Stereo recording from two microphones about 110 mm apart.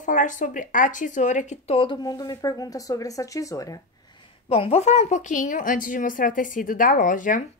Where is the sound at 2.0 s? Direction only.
35° left (ahead or behind).